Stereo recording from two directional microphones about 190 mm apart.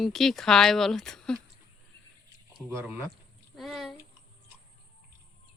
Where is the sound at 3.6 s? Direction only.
Centre (ahead or behind).